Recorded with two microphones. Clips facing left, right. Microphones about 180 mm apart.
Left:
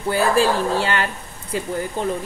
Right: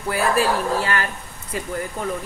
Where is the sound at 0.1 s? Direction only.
25° left (ahead or behind).